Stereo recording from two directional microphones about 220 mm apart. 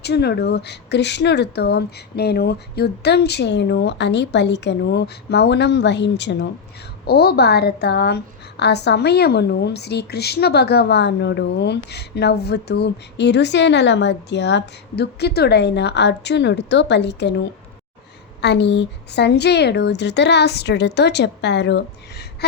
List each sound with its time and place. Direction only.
0.0 s a woman's voice: 50° left (ahead or behind)
18.4 s a woman's voice: 50° left (ahead or behind)